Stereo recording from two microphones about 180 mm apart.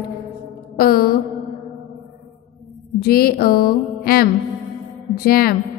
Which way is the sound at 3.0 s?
55° left (ahead or behind).